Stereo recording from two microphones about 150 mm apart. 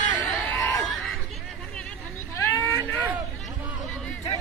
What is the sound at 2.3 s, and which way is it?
Vehicle, 15° left (ahead or behind).